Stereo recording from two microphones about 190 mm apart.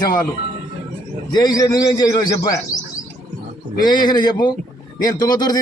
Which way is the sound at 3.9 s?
20° left (ahead or behind).